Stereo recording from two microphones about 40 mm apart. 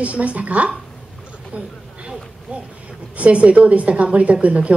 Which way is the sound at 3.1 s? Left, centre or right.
Right.